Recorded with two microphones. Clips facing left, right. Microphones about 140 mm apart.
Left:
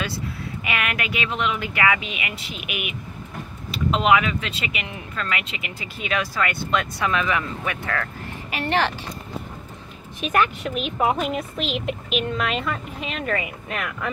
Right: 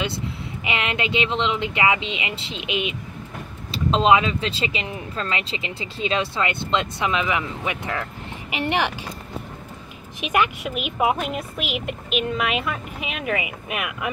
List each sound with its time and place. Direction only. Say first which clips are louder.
0.7 s speech: right 2 dB; 25° right (ahead or behind)
10.2 s speech: even; 15° right (ahead or behind)